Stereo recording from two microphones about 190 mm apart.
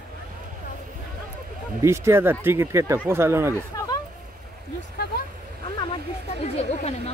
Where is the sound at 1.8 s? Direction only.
15° right (ahead or behind).